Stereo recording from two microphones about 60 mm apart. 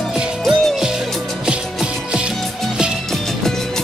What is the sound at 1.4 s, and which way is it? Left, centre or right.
Music, centre.